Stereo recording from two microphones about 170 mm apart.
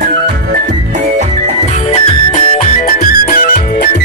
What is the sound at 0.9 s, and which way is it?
Music, 40° right (ahead or behind).